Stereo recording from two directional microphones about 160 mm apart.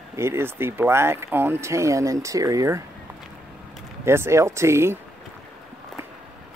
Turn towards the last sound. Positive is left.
turn(degrees=-15)  # may be behind; listen again after turning